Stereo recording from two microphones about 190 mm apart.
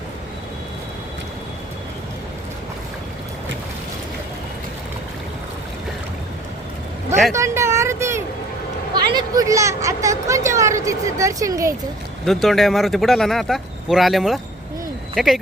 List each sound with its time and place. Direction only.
7.3 s vehicle: 15° right (ahead or behind)
9.0 s a woman's voice: 20° right (ahead or behind)
12.2 s speech: centre (ahead or behind)